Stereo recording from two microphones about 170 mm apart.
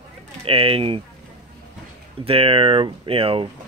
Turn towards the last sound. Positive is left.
turn(degrees=-30)  # may be behind; listen again after turning